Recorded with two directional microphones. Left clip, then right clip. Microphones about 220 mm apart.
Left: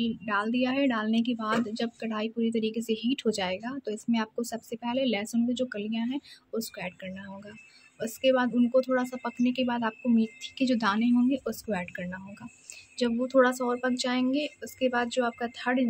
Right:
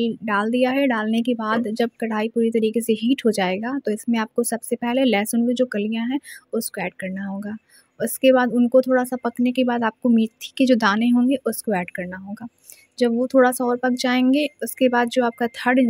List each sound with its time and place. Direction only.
0.0 s a woman's voice: 30° right (ahead or behind)